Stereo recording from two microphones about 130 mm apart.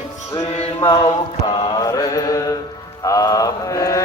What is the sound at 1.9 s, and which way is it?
Mantra, 30° left (ahead or behind).